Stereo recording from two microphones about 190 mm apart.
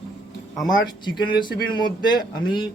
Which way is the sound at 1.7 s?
20° left (ahead or behind).